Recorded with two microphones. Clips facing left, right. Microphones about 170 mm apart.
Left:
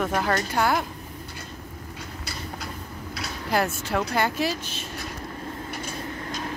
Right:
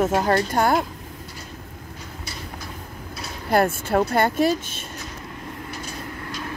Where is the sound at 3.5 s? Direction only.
50° right (ahead or behind).